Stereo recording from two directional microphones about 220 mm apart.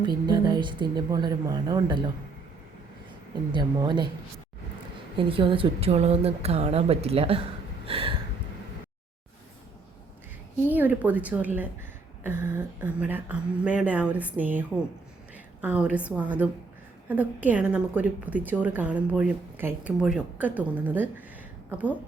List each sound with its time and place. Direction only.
0.0 s speech: 20° right (ahead or behind)
3.5 s speech: 20° right (ahead or behind)
5.1 s speech: 25° right (ahead or behind)
7.9 s a sound: 25° right (ahead or behind)
10.7 s a woman's voice: 10° right (ahead or behind)
15.6 s a woman's voice: 5° right (ahead or behind)